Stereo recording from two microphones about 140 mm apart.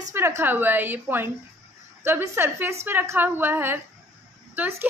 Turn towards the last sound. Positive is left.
turn(degrees=-15)  # may be behind; listen again after turning